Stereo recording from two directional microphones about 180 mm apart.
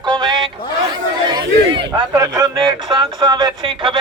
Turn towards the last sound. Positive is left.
turn(degrees=-30)  # may be behind; listen again after turning